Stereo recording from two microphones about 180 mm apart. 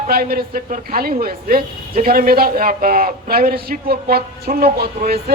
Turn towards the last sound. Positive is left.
turn(degrees=-60)  # may be behind; listen again after turning